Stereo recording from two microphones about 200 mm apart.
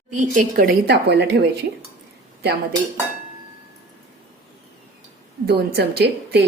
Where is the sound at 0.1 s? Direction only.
40° right (ahead or behind); by 1.5 s 55° right (ahead or behind).